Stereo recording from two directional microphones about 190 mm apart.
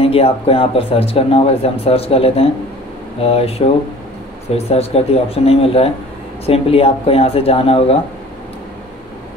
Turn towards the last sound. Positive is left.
turn(degrees=30)  # may be behind; listen again after turning